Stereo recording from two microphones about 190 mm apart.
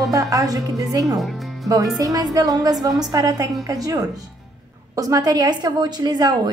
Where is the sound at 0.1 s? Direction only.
15° right (ahead or behind).